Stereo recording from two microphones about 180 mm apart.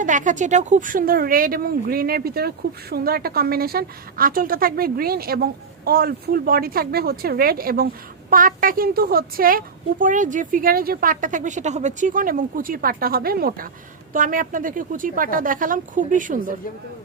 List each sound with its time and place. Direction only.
0.0 s a woman's voice: 45° right (ahead or behind)